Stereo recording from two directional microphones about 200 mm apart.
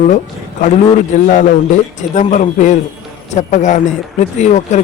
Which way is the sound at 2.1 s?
35° left (ahead or behind).